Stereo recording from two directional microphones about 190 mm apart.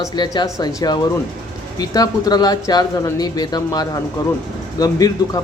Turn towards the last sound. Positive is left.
turn(degrees=20)  # may be behind; listen again after turning